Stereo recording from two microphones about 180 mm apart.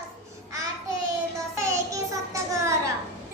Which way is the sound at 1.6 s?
15° right (ahead or behind).